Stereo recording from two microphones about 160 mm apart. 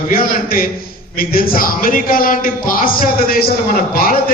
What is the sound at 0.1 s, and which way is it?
A man's voice, 65° left (ahead or behind).